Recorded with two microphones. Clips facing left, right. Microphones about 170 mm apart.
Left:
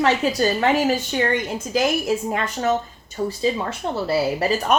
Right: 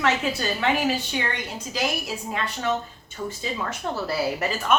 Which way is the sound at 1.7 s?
45° left (ahead or behind).